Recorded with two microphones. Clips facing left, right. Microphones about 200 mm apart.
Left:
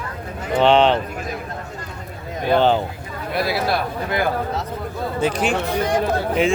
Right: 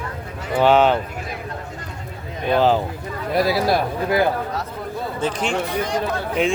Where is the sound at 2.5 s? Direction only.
Centre (ahead or behind).